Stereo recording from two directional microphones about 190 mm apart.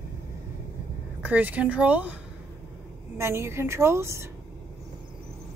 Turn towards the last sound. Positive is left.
turn(degrees=-15)  # may be behind; listen again after turning